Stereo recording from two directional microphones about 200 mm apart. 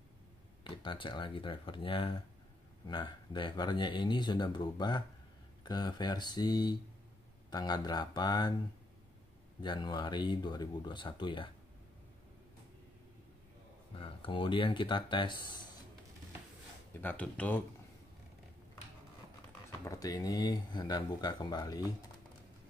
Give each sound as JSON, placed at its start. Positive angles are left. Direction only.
{"t": 0.7, "sound": "speech", "side_deg": 25}
{"t": 9.6, "sound": "speech", "side_deg": 20}
{"t": 13.9, "sound": "speech", "side_deg": 25}
{"t": 17.0, "sound": "speech", "side_deg": 10}
{"t": 19.8, "sound": "speech", "side_deg": 15}